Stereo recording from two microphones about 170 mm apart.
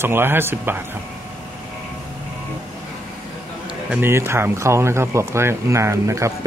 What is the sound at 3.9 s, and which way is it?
Speech, 15° right (ahead or behind).